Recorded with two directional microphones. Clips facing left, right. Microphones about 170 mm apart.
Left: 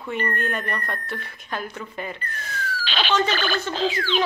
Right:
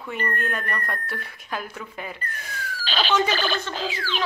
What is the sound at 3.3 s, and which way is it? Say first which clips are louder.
Speech: left 1 dB; 30° right (ahead or behind).